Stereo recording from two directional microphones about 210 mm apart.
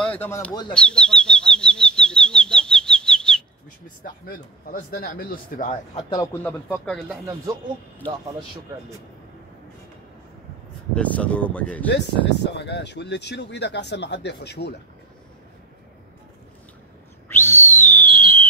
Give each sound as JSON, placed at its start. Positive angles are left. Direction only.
{"t": 0.0, "sound": "speech", "side_deg": 10}
{"t": 0.7, "sound": "bird flight", "side_deg": 5}
{"t": 4.6, "sound": "a man's voice", "side_deg": 45}
{"t": 6.0, "sound": "speech", "side_deg": 15}
{"t": 11.0, "sound": "speech", "side_deg": 5}
{"t": 11.9, "sound": "speech", "side_deg": 55}
{"t": 17.3, "sound": "whistle", "side_deg": 10}